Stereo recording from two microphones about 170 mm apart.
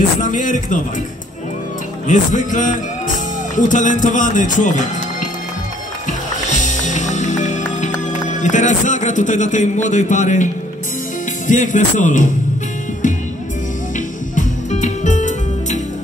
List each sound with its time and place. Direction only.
0.2 s speech: 50° left (ahead or behind)
2.0 s speech: 50° left (ahead or behind)
6.5 s music: 45° left (ahead or behind)
11.4 s speech: 50° left (ahead or behind)
13.9 s music: 45° left (ahead or behind)